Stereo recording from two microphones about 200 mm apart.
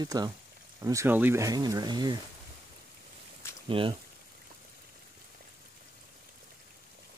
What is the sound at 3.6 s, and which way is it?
Speech, 25° right (ahead or behind).